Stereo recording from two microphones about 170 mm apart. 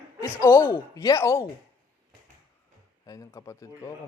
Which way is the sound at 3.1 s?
20° left (ahead or behind).